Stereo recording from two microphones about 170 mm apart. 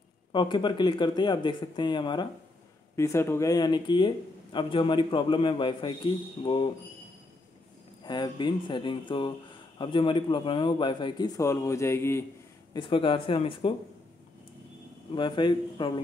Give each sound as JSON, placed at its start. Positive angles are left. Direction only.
{"t": 0.3, "sound": "speech", "side_deg": 25}
{"t": 3.0, "sound": "speech", "side_deg": 15}
{"t": 8.0, "sound": "speech", "side_deg": 25}
{"t": 12.7, "sound": "speech", "side_deg": 30}
{"t": 15.1, "sound": "speech", "side_deg": 25}